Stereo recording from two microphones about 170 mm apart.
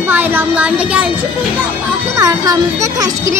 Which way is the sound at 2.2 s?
20° right (ahead or behind).